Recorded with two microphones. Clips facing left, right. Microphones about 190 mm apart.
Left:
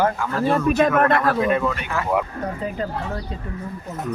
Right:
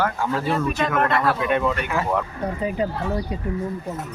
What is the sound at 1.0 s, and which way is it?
Speech, 50° left (ahead or behind).